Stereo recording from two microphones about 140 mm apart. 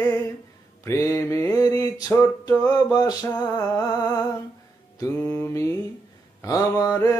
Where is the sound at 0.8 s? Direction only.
20° left (ahead or behind).